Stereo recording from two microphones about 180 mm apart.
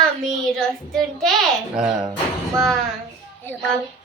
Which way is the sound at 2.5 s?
Centre (ahead or behind).